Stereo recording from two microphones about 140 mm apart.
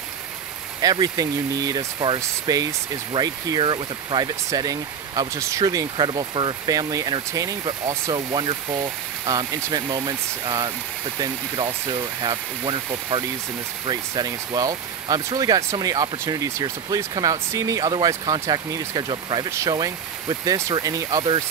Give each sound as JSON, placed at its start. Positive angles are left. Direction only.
{"t": 0.7, "sound": "speech", "side_deg": -30}